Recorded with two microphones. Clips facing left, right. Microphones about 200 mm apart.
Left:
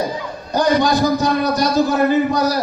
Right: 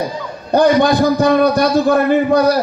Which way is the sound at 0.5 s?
60° right (ahead or behind).